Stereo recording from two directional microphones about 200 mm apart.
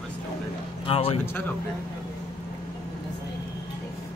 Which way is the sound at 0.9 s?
30° left (ahead or behind).